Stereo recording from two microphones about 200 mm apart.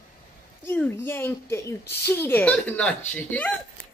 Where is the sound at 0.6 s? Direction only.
10° left (ahead or behind).